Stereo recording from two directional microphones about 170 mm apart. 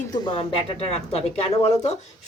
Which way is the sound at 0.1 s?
25° left (ahead or behind).